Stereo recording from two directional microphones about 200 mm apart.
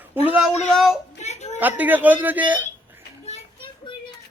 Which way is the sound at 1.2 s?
35° left (ahead or behind).